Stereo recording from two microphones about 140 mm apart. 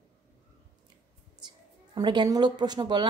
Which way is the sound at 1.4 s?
30° right (ahead or behind).